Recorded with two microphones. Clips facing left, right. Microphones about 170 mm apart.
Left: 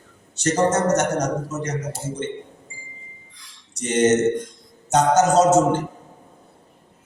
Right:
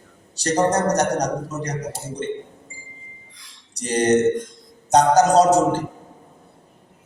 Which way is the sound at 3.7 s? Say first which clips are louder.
Even; 35° right (ahead or behind).